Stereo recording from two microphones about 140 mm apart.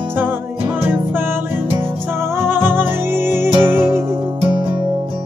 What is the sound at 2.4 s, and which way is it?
Music, 15° right (ahead or behind).